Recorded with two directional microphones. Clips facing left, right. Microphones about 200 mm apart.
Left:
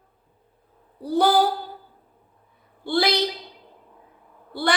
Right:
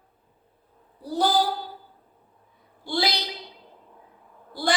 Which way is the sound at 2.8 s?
60° left (ahead or behind).